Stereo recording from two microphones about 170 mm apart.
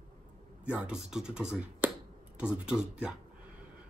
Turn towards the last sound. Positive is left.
turn(degrees=-5)  # may be behind; listen again after turning